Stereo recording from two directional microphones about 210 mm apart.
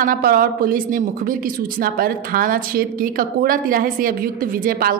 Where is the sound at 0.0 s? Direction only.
40° right (ahead or behind).